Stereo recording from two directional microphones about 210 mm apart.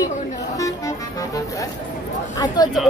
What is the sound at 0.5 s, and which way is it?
Music, 15° left (ahead or behind).